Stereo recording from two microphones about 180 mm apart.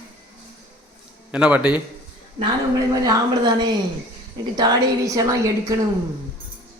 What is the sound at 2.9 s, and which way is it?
A woman's voice, 20° right (ahead or behind).